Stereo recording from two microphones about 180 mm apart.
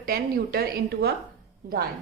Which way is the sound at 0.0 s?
60° right (ahead or behind).